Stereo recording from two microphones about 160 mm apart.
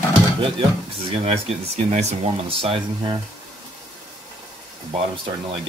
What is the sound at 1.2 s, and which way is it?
Speech, 40° right (ahead or behind).